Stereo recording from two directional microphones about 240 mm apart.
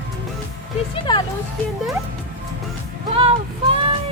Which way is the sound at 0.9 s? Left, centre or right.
Centre.